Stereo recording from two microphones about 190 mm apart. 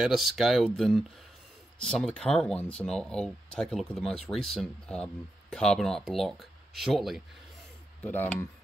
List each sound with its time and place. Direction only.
0.0 s speech: centre (ahead or behind)